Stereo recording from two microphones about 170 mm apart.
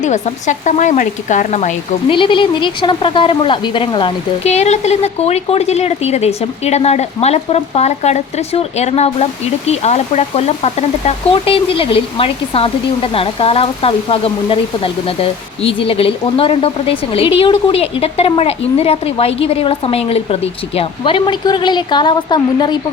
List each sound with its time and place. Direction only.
0.0 s speech: 45° left (ahead or behind)
2.0 s speech: 30° left (ahead or behind)